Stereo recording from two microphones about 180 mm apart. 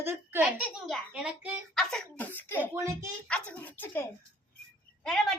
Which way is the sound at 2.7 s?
15° right (ahead or behind).